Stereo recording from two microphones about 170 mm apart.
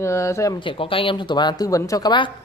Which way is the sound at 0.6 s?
30° left (ahead or behind).